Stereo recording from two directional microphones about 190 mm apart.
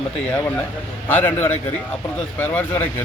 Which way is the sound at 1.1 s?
10° left (ahead or behind).